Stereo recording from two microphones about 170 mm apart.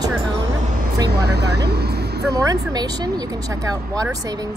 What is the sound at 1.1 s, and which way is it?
Speech, 70° right (ahead or behind).